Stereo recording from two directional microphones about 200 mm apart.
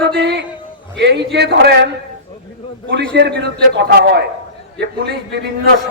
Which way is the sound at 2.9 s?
60° right (ahead or behind).